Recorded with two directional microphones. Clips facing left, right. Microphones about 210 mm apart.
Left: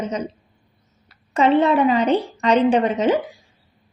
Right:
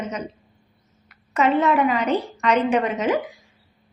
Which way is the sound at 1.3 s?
30° left (ahead or behind).